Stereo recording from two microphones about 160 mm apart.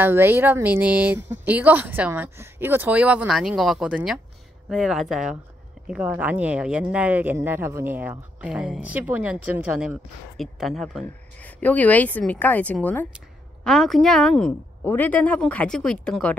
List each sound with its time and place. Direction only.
0.0 s a woman's voice: 15° right (ahead or behind); by 16.3 s 5° left (ahead or behind)